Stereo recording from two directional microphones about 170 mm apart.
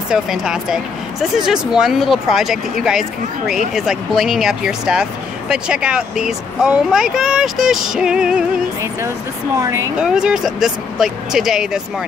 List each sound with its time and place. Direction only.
0.1 s speech: 5° right (ahead or behind)
9.6 s speech: 20° right (ahead or behind)
9.9 s speech: 5° right (ahead or behind)